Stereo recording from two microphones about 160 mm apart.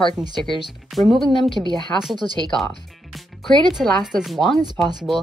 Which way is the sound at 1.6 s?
25° right (ahead or behind).